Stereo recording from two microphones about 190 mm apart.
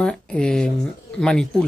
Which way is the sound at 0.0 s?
5° left (ahead or behind).